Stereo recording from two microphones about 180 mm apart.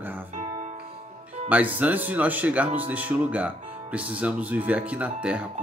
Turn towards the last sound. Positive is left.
turn(degrees=-5)  # may be behind; listen again after turning